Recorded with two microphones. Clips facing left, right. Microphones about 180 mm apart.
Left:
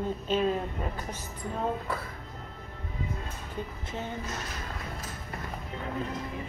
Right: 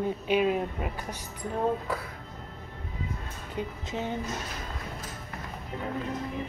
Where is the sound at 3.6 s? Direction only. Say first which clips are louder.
Right 4 dB; 15° right (ahead or behind).